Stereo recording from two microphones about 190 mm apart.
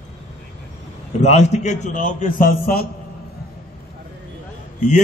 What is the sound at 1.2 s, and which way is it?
A man's voice, 35° left (ahead or behind).